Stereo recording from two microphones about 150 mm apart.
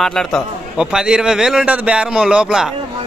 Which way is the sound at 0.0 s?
Centre (ahead or behind).